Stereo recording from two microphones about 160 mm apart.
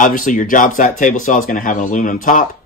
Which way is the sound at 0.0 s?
55° left (ahead or behind).